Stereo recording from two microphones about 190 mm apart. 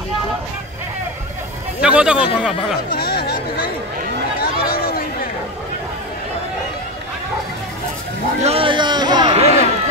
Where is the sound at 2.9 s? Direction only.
55° left (ahead or behind).